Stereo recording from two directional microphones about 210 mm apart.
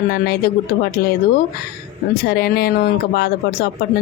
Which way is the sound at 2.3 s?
50° left (ahead or behind).